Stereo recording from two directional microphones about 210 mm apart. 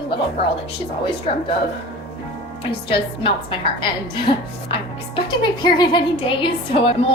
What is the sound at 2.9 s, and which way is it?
A woman's voice, 25° left (ahead or behind).